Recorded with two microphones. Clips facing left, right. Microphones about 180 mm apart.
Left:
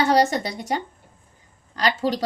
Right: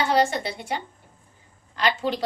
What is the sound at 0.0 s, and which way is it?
Speech, 40° left (ahead or behind).